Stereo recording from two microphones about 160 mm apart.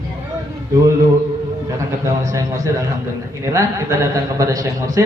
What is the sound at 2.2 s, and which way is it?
A man's voice, 20° right (ahead or behind).